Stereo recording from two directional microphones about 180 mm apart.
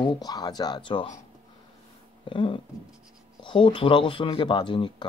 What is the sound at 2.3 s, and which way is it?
Speech, 30° left (ahead or behind).